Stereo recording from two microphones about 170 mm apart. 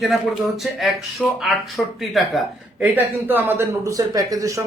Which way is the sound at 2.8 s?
10° right (ahead or behind).